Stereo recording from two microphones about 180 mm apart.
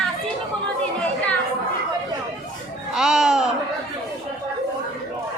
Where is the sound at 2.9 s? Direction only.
5° right (ahead or behind).